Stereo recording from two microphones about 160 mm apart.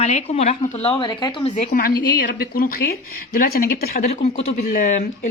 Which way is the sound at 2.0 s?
75° left (ahead or behind).